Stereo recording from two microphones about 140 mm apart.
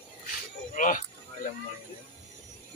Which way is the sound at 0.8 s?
70° left (ahead or behind).